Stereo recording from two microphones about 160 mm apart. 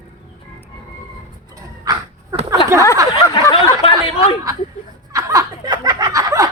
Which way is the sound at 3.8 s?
35° left (ahead or behind).